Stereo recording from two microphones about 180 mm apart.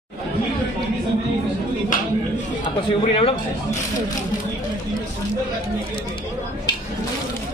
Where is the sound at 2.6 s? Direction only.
35° left (ahead or behind).